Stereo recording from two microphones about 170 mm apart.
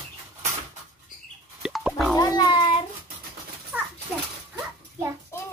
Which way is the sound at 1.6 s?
Centre (ahead or behind).